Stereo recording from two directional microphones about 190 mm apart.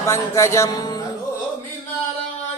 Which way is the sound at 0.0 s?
15° left (ahead or behind).